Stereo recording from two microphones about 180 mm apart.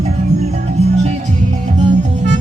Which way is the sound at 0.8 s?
40° right (ahead or behind).